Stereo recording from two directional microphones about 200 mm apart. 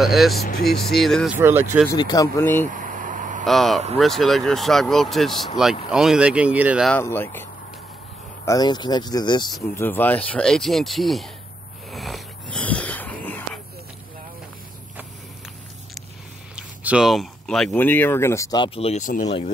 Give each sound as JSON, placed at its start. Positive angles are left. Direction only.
{"t": 0.0, "sound": "speech", "side_deg": 0}
{"t": 1.4, "sound": "speech", "side_deg": -10}
{"t": 1.9, "sound": "speech", "side_deg": 20}
{"t": 2.7, "sound": "vehicle", "side_deg": -40}
{"t": 3.4, "sound": "speech", "side_deg": 0}
{"t": 6.9, "sound": "speech", "side_deg": 10}
{"t": 8.5, "sound": "speech", "side_deg": 20}
{"t": 9.8, "sound": "speech", "side_deg": 10}
{"t": 11.9, "sound": "a sound", "side_deg": 0}
{"t": 16.5, "sound": "speech", "side_deg": -5}